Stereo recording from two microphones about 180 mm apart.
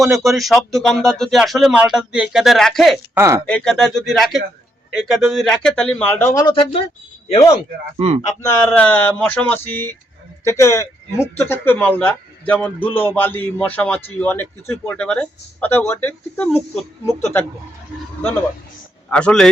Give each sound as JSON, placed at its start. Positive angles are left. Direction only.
{"t": 0.0, "sound": "speech", "side_deg": 0}
{"t": 3.2, "sound": "speech", "side_deg": -15}
{"t": 3.4, "sound": "speech", "side_deg": 5}
{"t": 6.4, "sound": "speech", "side_deg": 30}
{"t": 7.9, "sound": "speech", "side_deg": -35}
{"t": 8.4, "sound": "speech", "side_deg": 10}
{"t": 19.1, "sound": "speech", "side_deg": 5}